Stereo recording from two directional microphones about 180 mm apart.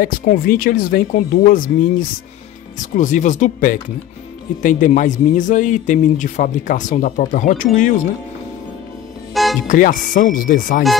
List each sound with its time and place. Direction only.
0.0 s speech: 50° left (ahead or behind)
9.3 s music: centre (ahead or behind)
9.7 s speech: 50° left (ahead or behind)